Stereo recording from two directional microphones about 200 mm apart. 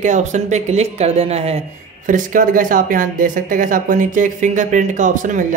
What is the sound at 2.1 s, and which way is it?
Speech, 40° right (ahead or behind).